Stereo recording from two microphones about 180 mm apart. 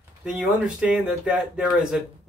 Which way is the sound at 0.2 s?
5° right (ahead or behind).